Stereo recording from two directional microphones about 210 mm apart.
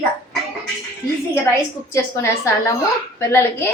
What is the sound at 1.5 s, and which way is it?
A woman's voice, 10° left (ahead or behind).